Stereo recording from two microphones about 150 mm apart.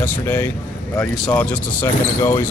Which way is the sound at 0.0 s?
15° left (ahead or behind).